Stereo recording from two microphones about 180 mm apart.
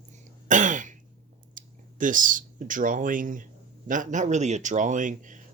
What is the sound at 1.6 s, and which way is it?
Speech, 45° right (ahead or behind).